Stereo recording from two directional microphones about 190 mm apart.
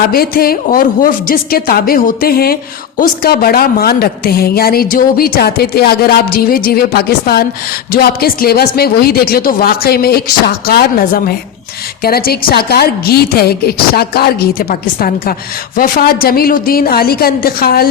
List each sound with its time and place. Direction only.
0.1 s a woman's voice: 50° left (ahead or behind)